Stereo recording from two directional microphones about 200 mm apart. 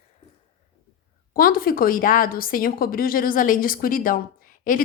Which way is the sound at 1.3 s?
45° left (ahead or behind).